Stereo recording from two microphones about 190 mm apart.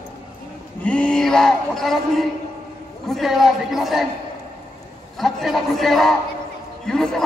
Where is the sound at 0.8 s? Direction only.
5° left (ahead or behind).